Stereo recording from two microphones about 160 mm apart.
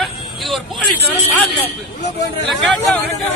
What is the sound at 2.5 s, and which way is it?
Speech, centre (ahead or behind).